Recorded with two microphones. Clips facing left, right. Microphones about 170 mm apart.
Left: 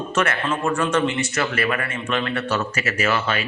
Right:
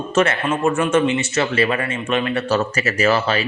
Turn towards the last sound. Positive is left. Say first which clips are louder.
# right 5 dB
turn(degrees=-35)  # may be behind; listen again after turning